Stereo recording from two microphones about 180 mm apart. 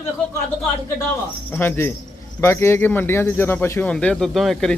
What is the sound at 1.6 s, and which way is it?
Speech, 10° left (ahead or behind).